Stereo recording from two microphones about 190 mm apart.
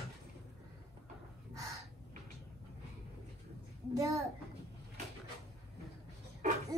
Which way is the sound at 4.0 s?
15° right (ahead or behind).